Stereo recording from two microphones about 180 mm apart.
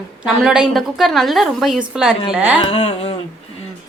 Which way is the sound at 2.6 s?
30° left (ahead or behind).